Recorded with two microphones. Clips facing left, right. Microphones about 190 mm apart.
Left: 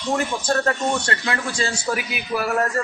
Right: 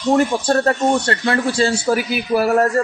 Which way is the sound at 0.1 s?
35° right (ahead or behind).